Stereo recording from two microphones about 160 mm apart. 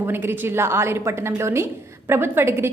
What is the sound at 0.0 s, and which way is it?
A woman's voice, 15° right (ahead or behind).